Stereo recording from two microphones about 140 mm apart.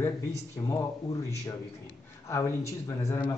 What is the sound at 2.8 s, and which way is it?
Speech, 25° left (ahead or behind).